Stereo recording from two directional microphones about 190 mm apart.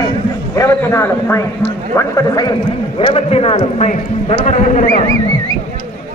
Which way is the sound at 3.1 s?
30° left (ahead or behind).